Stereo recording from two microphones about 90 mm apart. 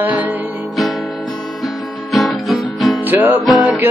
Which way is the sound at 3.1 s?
20° right (ahead or behind).